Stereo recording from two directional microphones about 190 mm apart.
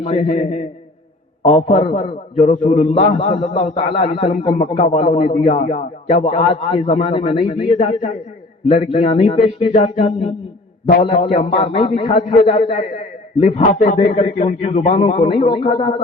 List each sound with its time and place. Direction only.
0.0 s a man's voice: 40° left (ahead or behind)